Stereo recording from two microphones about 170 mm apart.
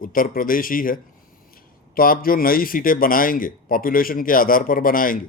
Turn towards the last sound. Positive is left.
turn(degrees=55)  # may be behind; listen again after turning